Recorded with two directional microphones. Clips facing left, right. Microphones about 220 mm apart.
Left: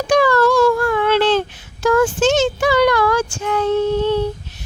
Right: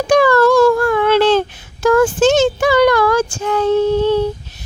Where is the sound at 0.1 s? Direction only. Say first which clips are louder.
Right 3 dB; 50° right (ahead or behind); by 4.1 s 35° right (ahead or behind).